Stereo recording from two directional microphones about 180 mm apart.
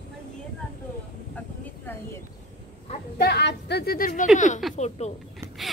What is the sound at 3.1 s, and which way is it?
A woman's voice, 65° left (ahead or behind).